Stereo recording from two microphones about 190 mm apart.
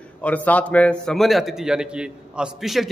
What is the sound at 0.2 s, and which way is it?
A man's voice, 10° left (ahead or behind).